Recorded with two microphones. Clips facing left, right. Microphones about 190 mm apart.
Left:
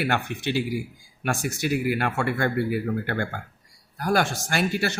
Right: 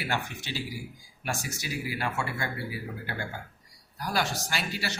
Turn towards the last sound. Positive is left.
turn(degrees=55)  # may be behind; listen again after turning